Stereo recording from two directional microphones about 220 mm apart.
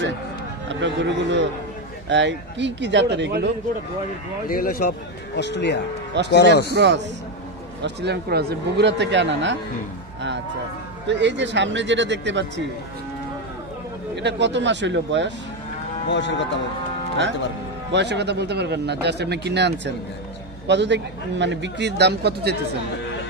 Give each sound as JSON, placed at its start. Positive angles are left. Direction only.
{"t": 0.7, "sound": "speech", "side_deg": -55}
{"t": 4.5, "sound": "speech", "side_deg": 40}
{"t": 6.7, "sound": "speech", "side_deg": -50}
{"t": 11.1, "sound": "speech", "side_deg": -55}
{"t": 14.1, "sound": "speech", "side_deg": -50}
{"t": 16.1, "sound": "speech", "side_deg": 55}
{"t": 17.9, "sound": "speech", "side_deg": -50}